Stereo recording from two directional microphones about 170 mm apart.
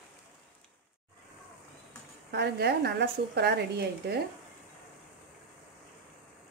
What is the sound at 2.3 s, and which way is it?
Speech, 75° right (ahead or behind).